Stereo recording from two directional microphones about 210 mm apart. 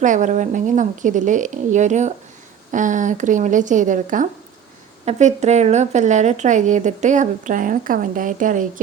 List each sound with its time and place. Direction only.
0.0 s speech: 35° right (ahead or behind)